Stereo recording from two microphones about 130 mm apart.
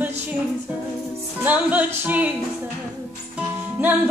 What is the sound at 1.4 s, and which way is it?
Singing, 10° right (ahead or behind).